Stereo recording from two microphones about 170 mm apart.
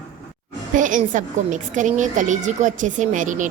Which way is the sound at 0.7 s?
50° right (ahead or behind).